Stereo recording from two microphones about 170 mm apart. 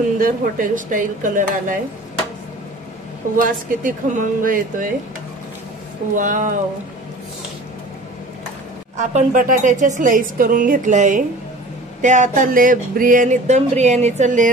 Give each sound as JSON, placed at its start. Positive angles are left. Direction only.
{"t": 0.2, "sound": "speech", "side_deg": -50}
{"t": 3.4, "sound": "speech", "side_deg": -50}
{"t": 6.1, "sound": "speech", "side_deg": -50}
{"t": 8.9, "sound": "speech", "side_deg": -50}